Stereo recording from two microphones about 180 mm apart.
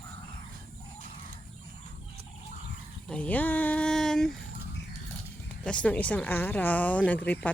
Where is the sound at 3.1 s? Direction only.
5° left (ahead or behind).